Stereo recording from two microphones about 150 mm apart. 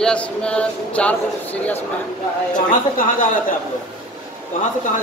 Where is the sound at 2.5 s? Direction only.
65° left (ahead or behind).